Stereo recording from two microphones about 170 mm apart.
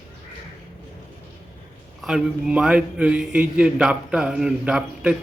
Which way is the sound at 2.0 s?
Centre (ahead or behind).